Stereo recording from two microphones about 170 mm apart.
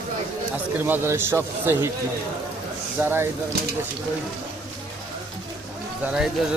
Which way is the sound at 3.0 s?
15° right (ahead or behind).